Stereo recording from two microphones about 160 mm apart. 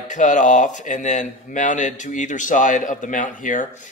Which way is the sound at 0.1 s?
50° left (ahead or behind).